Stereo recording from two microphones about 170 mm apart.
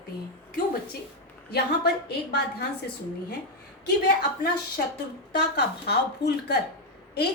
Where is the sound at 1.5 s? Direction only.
70° left (ahead or behind).